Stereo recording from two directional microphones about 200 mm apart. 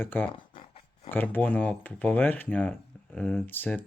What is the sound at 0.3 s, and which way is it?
Dog, 25° left (ahead or behind).